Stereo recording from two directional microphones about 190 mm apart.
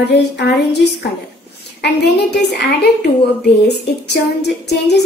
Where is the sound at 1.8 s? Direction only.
60° left (ahead or behind).